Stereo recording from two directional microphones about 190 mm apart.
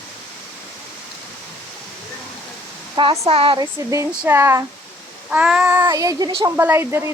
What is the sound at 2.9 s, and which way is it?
Speech, 20° right (ahead or behind).